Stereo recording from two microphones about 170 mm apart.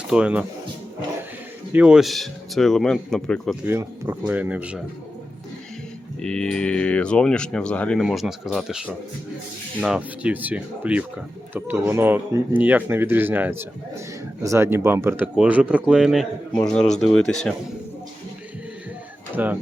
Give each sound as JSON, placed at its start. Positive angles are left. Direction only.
{"t": 0.1, "sound": "speech", "side_deg": -5}
{"t": 1.7, "sound": "speech", "side_deg": -5}
{"t": 3.7, "sound": "speech", "side_deg": -10}
{"t": 6.2, "sound": "speech", "side_deg": 5}
{"t": 19.4, "sound": "speech", "side_deg": -10}